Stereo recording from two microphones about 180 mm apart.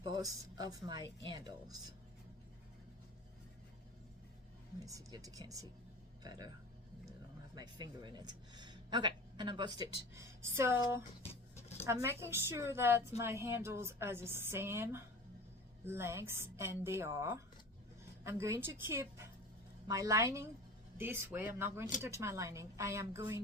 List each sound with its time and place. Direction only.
0.0 s a woman's voice: 20° right (ahead or behind)
4.8 s speech: 20° right (ahead or behind)
7.5 s a woman's voice: 25° right (ahead or behind)